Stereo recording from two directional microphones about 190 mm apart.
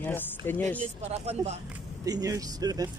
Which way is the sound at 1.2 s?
35° right (ahead or behind).